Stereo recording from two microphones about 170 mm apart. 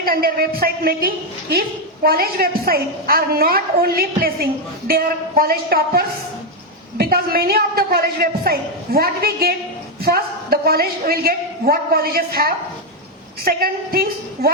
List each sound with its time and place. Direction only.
0.0 s a man's voice: 60° right (ahead or behind)